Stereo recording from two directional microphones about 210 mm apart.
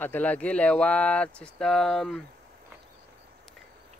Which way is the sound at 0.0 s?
10° left (ahead or behind).